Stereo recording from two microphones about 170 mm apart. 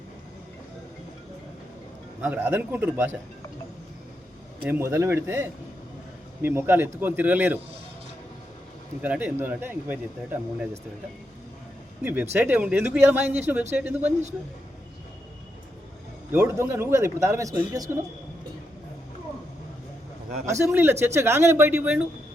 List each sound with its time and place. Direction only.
2.2 s speech: 10° right (ahead or behind)
4.6 s speech: 15° right (ahead or behind)
9.0 s speech: 10° right (ahead or behind)
12.0 s speech: 15° right (ahead or behind)
16.3 s speech: 15° right (ahead or behind)
20.5 s speech: 15° right (ahead or behind)